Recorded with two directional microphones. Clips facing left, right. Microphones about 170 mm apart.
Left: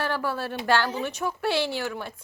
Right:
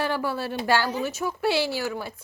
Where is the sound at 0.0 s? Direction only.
10° right (ahead or behind).